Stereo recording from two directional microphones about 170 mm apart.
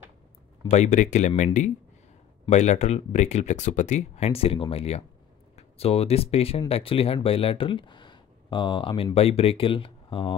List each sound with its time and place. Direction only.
0.7 s speech: 45° left (ahead or behind); by 10.3 s 30° left (ahead or behind)